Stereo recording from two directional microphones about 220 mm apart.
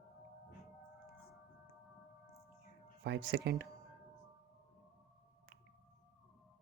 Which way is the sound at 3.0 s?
50° right (ahead or behind).